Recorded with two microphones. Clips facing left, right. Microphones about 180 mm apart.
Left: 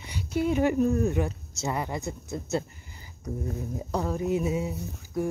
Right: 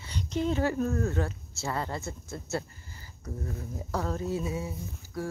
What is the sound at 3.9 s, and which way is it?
Speech, 15° left (ahead or behind).